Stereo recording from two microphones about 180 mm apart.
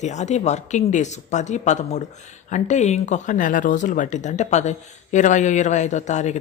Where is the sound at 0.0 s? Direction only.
40° left (ahead or behind).